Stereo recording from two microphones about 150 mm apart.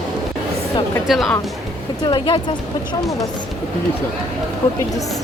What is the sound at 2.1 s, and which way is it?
Speech, 30° left (ahead or behind).